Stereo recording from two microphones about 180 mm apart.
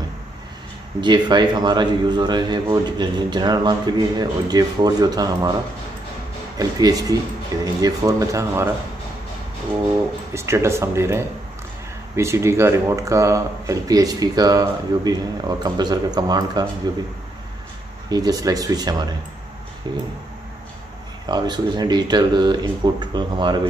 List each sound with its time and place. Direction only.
1.0 s a man's voice: 25° right (ahead or behind)
6.6 s a man's voice: 20° right (ahead or behind)
10.3 s a man's voice: 15° right (ahead or behind)
18.1 s a man's voice: 20° right (ahead or behind)
21.3 s a man's voice: 25° right (ahead or behind)